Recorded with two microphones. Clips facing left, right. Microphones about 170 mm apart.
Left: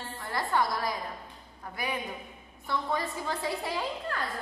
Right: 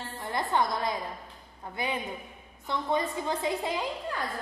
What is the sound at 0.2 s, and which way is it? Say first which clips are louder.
A woman's voice: right 1 dB; 20° right (ahead or behind).